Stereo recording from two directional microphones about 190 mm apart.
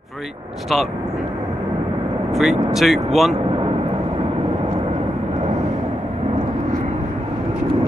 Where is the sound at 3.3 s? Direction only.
30° right (ahead or behind).